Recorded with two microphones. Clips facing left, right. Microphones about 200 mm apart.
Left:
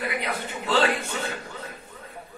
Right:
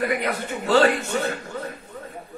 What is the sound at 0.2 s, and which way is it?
A man's voice, 50° right (ahead or behind).